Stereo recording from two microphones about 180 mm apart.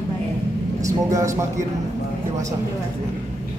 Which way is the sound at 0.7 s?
20° right (ahead or behind).